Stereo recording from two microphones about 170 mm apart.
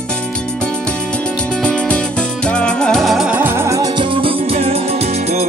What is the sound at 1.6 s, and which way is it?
Music, 5° left (ahead or behind).